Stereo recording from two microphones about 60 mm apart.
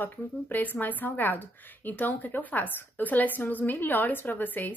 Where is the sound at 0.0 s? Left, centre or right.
Left.